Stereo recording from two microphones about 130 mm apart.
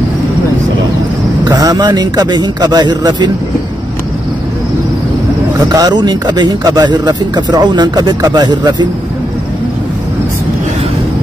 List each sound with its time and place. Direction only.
1.4 s speech: 30° right (ahead or behind)
5.7 s speech: 30° right (ahead or behind)